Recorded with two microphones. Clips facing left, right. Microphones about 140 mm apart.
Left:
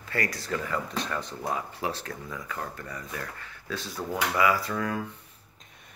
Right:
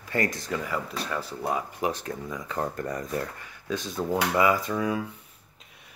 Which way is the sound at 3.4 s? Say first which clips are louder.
Right 4 dB; 15° right (ahead or behind).